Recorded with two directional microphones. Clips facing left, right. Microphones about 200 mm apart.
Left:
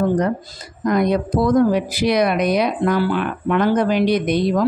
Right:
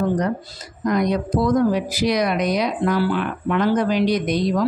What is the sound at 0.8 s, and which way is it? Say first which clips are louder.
A woman's voice: left 2 dB; 55° left (ahead or behind).